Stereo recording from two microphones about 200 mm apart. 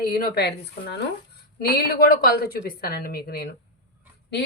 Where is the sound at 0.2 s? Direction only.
55° left (ahead or behind).